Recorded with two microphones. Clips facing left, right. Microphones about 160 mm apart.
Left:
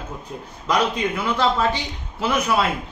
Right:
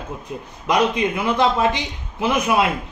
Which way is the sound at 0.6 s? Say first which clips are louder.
Right 3 dB; 20° right (ahead or behind).